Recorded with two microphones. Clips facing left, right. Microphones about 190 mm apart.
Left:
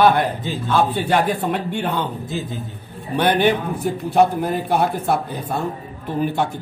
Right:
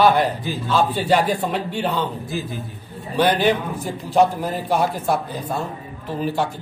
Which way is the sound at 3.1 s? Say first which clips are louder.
Left 1 dB; 55° left (ahead or behind).